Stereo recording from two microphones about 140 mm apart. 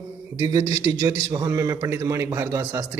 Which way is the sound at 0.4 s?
25° right (ahead or behind).